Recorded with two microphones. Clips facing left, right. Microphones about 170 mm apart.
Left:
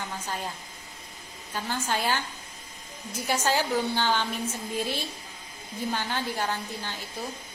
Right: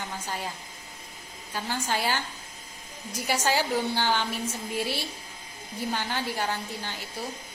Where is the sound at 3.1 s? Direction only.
10° right (ahead or behind).